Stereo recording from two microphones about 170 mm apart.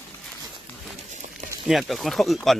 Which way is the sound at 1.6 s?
Centre (ahead or behind).